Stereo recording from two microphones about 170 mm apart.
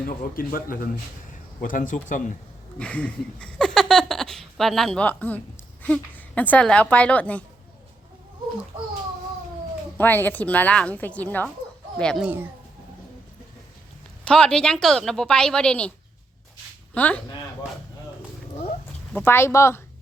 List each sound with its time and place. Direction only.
0.2 s a man's voice: 55° left (ahead or behind)
2.7 s a woman's voice: 5° left (ahead or behind)
10.0 s a woman's voice: 10° left (ahead or behind)
14.3 s a woman's voice: 5° left (ahead or behind)
16.9 s a sound: 10° left (ahead or behind)
19.1 s a woman's voice: 15° left (ahead or behind)